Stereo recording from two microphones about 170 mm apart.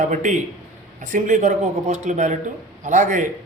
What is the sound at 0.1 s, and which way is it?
A man's voice, 45° right (ahead or behind).